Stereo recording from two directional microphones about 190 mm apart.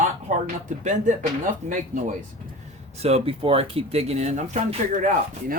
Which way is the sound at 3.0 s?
30° right (ahead or behind).